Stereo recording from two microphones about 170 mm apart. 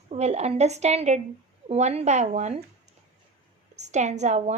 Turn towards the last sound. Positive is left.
turn(degrees=-45)  # may be behind; listen again after turning